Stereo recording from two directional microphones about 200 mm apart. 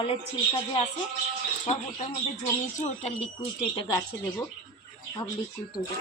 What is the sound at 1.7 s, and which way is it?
Speech, 35° left (ahead or behind).